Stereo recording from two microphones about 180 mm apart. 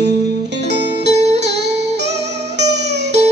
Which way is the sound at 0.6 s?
70° right (ahead or behind).